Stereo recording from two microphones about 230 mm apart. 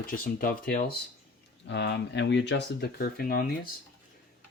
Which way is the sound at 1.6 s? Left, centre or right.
Left.